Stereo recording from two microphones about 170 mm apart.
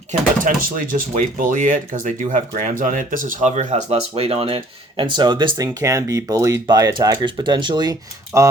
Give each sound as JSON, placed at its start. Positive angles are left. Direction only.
{"t": 0.1, "sound": "speech", "side_deg": -55}